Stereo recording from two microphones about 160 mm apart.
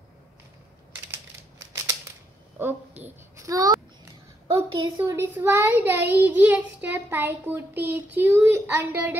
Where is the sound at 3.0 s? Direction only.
20° right (ahead or behind).